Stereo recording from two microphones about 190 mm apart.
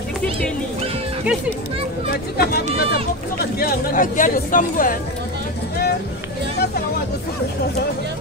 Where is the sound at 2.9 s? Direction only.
50° left (ahead or behind).